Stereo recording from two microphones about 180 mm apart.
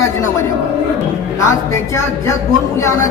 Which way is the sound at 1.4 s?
15° left (ahead or behind).